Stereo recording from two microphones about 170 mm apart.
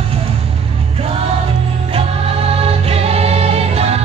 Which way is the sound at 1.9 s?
35° right (ahead or behind).